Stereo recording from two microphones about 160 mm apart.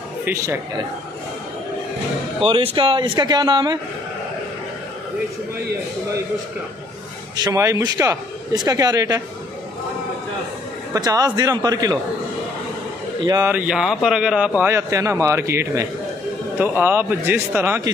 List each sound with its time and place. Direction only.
0.2 s speech: 15° right (ahead or behind)
2.4 s a man's voice: 30° right (ahead or behind)
7.3 s a man's voice: 20° right (ahead or behind)
10.9 s a man's voice: 25° right (ahead or behind)
13.2 s a man's voice: 25° right (ahead or behind)
13.5 s speech: 5° right (ahead or behind)
14.6 s a man's voice: 15° right (ahead or behind)